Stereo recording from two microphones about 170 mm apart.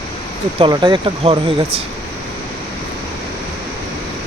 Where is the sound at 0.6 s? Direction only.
25° right (ahead or behind).